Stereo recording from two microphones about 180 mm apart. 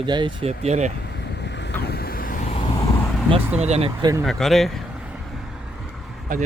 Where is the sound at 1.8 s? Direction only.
60° left (ahead or behind); by 2.6 s 45° left (ahead or behind).